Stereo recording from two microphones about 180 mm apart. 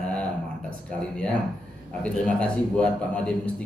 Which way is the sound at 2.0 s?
5° left (ahead or behind).